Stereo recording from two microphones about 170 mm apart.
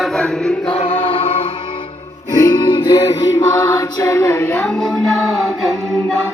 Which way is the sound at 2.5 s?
30° left (ahead or behind).